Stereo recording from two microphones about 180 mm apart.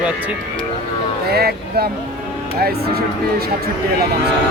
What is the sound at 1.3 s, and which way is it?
Speech, 60° right (ahead or behind).